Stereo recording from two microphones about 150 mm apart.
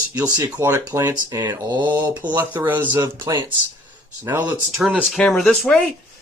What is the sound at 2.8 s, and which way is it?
Speech, 30° right (ahead or behind).